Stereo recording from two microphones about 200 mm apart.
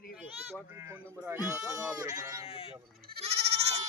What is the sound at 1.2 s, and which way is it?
Bleat, 10° right (ahead or behind).